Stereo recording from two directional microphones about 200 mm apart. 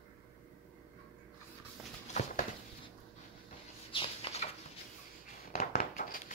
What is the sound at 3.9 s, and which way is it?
Rodents, 25° left (ahead or behind).